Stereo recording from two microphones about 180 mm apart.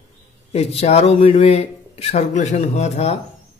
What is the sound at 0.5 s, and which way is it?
Speech, 35° left (ahead or behind).